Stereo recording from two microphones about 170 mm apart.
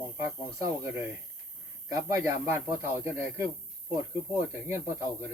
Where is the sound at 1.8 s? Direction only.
15° right (ahead or behind).